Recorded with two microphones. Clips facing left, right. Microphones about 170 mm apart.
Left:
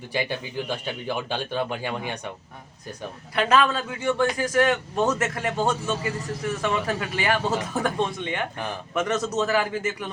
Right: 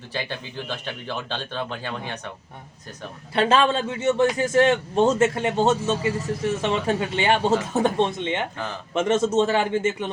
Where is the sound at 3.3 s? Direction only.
30° right (ahead or behind).